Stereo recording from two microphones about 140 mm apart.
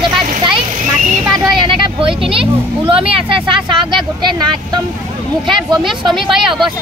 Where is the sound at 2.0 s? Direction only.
40° right (ahead or behind).